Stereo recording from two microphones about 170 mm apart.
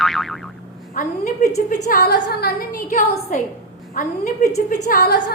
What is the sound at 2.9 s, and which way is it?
A woman's voice, 45° left (ahead or behind).